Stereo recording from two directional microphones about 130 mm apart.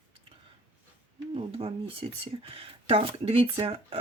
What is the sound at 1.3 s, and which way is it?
Speech, 45° right (ahead or behind).